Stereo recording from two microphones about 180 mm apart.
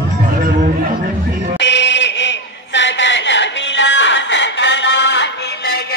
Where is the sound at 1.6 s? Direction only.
75° left (ahead or behind).